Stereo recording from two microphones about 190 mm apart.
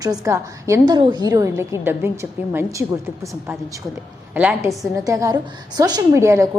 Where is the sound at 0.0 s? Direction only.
20° right (ahead or behind).